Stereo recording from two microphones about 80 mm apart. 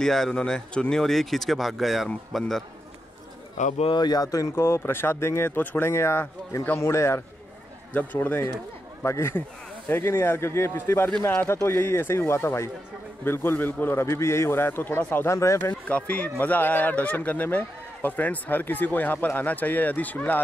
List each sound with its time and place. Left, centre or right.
0.0 s speech: centre
3.9 s speech: left
4.6 s speech: left
7.9 s speech: left
9.0 s speech: left
15.9 s speech: centre